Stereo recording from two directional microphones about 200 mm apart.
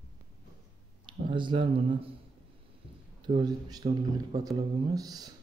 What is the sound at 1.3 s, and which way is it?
Speech, 25° right (ahead or behind).